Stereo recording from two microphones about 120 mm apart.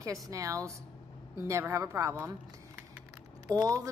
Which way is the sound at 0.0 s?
30° right (ahead or behind).